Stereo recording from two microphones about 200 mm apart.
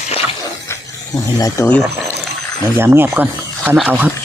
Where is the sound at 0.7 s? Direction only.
15° left (ahead or behind).